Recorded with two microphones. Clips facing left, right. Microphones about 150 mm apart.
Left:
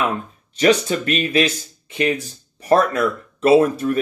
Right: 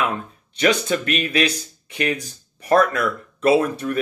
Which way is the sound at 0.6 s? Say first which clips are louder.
Left 3 dB; 35° left (ahead or behind).